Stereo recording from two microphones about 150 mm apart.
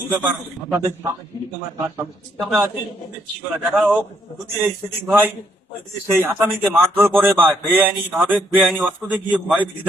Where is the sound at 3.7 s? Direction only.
10° right (ahead or behind).